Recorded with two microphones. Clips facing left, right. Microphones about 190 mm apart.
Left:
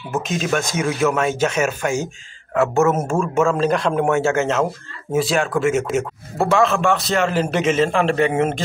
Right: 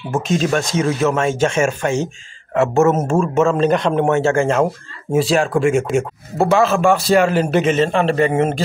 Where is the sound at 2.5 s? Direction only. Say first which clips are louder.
Right 2 dB; 25° right (ahead or behind).